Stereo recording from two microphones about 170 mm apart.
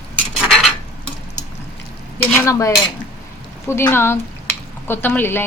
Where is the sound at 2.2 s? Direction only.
10° left (ahead or behind).